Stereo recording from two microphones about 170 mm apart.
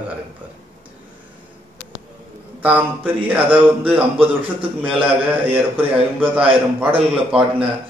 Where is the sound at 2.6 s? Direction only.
10° right (ahead or behind).